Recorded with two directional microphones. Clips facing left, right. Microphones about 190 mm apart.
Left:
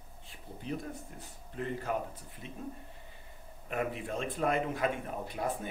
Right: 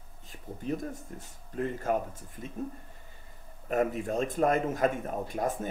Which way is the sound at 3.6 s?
45° right (ahead or behind).